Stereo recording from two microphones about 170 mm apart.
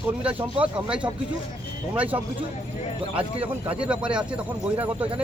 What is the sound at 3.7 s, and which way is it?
Speech, 5° right (ahead or behind).